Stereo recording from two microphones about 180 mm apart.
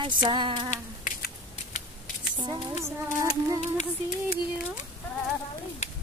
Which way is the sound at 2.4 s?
20° right (ahead or behind).